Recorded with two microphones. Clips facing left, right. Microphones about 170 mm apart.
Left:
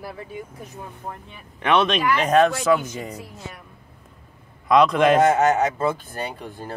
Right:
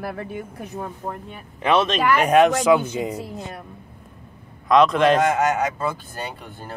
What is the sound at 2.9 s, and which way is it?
Speech, 25° right (ahead or behind).